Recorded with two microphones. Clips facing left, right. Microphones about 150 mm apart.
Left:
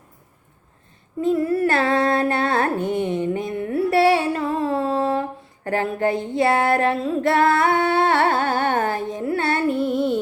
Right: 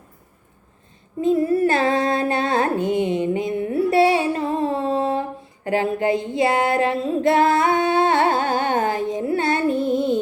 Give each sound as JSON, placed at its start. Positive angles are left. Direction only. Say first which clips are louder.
{"t": 1.2, "sound": "music", "louder": "right 2 dB", "side_deg": -20}
{"t": 5.6, "sound": "female singing", "louder": "right 1 dB", "side_deg": -15}